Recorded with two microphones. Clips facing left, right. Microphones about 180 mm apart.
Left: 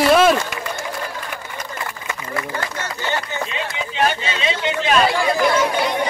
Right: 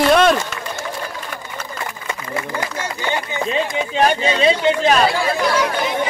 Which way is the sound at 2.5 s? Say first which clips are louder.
Right 2 dB; 10° right (ahead or behind).